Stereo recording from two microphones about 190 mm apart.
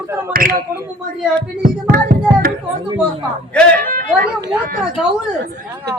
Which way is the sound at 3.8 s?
50° right (ahead or behind).